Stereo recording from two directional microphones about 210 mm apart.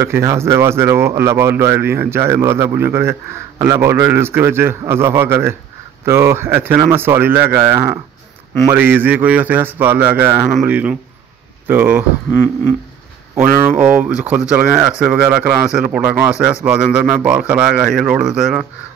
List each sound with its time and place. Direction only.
0.0 s speech: 15° right (ahead or behind)
13.3 s speech: 10° right (ahead or behind)
13.7 s speech: 40° right (ahead or behind)
14.0 s speech: 10° right (ahead or behind)